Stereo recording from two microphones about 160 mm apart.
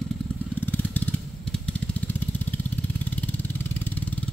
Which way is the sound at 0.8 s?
10° left (ahead or behind).